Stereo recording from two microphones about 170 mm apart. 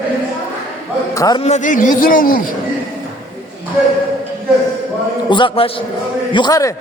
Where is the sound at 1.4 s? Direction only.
45° left (ahead or behind).